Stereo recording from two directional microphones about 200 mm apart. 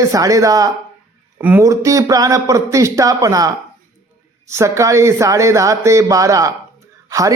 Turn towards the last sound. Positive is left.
turn(degrees=-15)  # may be behind; listen again after turning